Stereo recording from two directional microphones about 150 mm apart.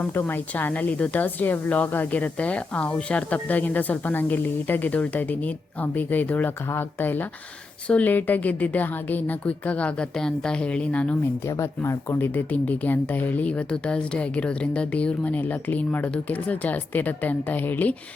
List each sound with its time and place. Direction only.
0.0 s a woman's voice: 15° left (ahead or behind)
11.4 s a woman's voice: 20° left (ahead or behind)